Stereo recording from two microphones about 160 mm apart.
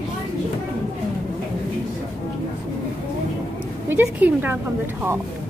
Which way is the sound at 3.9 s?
15° right (ahead or behind).